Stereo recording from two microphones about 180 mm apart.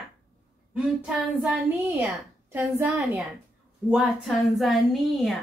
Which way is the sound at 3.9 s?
Centre (ahead or behind).